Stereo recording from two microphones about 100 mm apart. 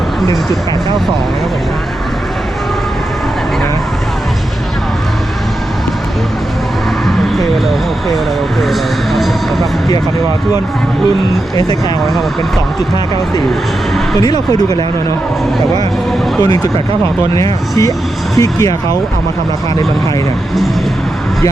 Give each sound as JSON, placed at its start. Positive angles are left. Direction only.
{"t": 8.7, "sound": "music", "side_deg": 0}
{"t": 14.2, "sound": "speech", "side_deg": 40}
{"t": 17.3, "sound": "speech", "side_deg": 35}